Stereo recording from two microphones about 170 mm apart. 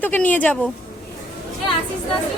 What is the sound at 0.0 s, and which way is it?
Speech, 10° left (ahead or behind).